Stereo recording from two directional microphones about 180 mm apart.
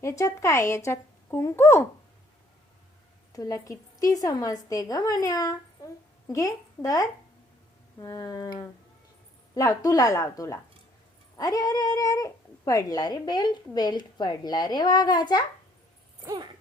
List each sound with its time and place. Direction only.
0.0 s speech: 15° left (ahead or behind)
3.3 s speech: 20° left (ahead or behind)
16.2 s speech: 20° right (ahead or behind)